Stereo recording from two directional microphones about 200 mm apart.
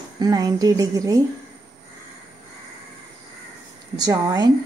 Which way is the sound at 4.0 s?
20° right (ahead or behind).